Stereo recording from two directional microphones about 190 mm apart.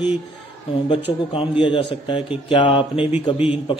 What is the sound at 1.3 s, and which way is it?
A man's voice, 25° left (ahead or behind).